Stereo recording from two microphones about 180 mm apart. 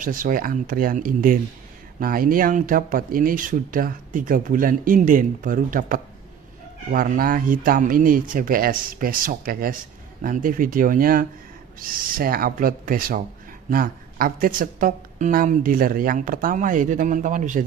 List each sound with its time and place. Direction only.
0.0 s speech: 50° right (ahead or behind)